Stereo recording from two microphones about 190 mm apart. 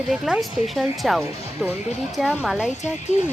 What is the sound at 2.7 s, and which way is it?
Speech, 40° left (ahead or behind).